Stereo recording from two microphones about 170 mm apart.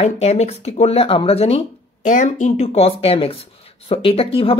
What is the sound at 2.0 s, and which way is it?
Speech, 45° left (ahead or behind).